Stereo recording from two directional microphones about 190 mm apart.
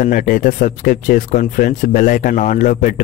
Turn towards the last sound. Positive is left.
turn(degrees=45)  # may be behind; listen again after turning